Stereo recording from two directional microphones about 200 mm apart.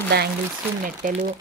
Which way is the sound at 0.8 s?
40° right (ahead or behind).